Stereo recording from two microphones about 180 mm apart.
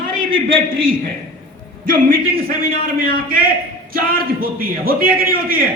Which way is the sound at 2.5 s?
50° right (ahead or behind).